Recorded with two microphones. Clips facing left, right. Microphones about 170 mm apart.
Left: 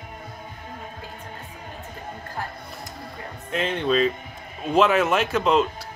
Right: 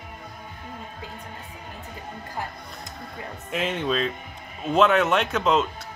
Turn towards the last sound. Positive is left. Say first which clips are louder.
# left 2 dB
turn(degrees=0)  # may be behind; listen again after turning